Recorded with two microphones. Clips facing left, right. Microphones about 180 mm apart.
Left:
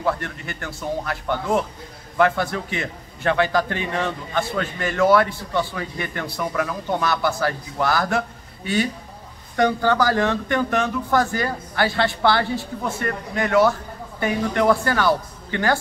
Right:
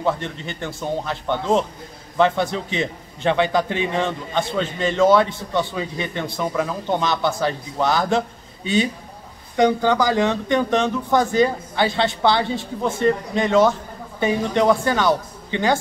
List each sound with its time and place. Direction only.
0.0 s a man's voice: 25° right (ahead or behind)
9.6 s a man's voice: 15° right (ahead or behind)